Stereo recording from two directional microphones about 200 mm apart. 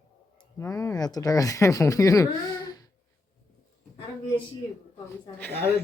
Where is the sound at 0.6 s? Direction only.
15° left (ahead or behind).